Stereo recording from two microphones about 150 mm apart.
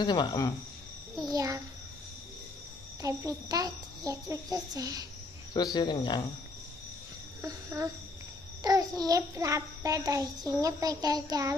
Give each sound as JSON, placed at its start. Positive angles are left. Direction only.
{"t": 0.0, "sound": "speech", "side_deg": 30}
{"t": 1.3, "sound": "a child's voice", "side_deg": -20}
{"t": 3.0, "sound": "a child's voice", "side_deg": -20}
{"t": 5.5, "sound": "speech", "side_deg": 30}
{"t": 7.4, "sound": "a child's voice", "side_deg": -20}